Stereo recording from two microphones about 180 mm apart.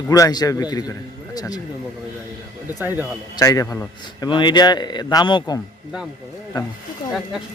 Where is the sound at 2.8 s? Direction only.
10° right (ahead or behind).